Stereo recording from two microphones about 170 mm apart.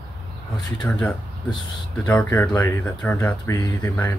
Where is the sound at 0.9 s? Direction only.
15° left (ahead or behind).